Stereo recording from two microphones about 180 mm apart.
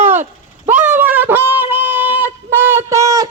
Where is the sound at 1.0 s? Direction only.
10° right (ahead or behind).